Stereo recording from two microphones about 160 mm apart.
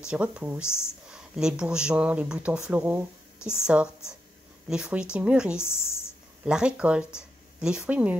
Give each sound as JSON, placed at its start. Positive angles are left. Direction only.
{"t": 0.0, "sound": "speech", "side_deg": -5}
{"t": 0.7, "sound": "speech", "side_deg": 15}
{"t": 1.1, "sound": "speech", "side_deg": -5}
{"t": 3.3, "sound": "a sound", "side_deg": 15}
{"t": 3.6, "sound": "speech", "side_deg": -5}
{"t": 5.6, "sound": "speech", "side_deg": 15}
{"t": 6.4, "sound": "speech", "side_deg": -5}